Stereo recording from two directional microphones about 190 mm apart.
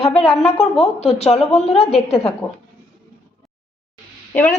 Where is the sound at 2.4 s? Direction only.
20° left (ahead or behind).